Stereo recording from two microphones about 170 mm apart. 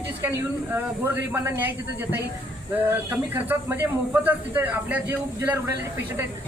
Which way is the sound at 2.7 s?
10° right (ahead or behind).